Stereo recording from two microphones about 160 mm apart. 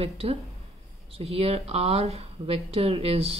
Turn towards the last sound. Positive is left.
turn(degrees=-40)  # may be behind; listen again after turning